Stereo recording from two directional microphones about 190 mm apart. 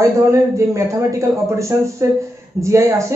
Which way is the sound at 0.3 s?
15° right (ahead or behind).